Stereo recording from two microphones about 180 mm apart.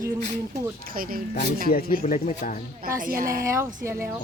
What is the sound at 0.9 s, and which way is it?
Speech, 50° right (ahead or behind).